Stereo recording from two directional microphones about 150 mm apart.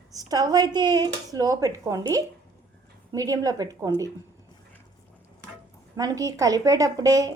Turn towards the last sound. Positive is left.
turn(degrees=-25)  # may be behind; listen again after turning